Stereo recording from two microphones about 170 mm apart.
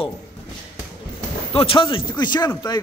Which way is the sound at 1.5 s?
30° left (ahead or behind).